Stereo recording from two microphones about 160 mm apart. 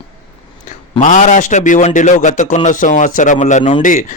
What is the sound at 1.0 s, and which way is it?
A man's voice, 50° left (ahead or behind).